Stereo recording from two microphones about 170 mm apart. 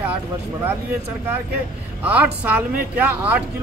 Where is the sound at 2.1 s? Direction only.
10° right (ahead or behind).